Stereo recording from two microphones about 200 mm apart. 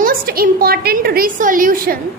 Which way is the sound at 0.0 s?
50° right (ahead or behind).